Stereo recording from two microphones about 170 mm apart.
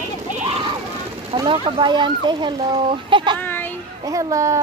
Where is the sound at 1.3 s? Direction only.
30° right (ahead or behind).